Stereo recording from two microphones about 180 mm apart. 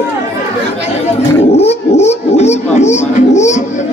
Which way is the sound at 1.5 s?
35° left (ahead or behind).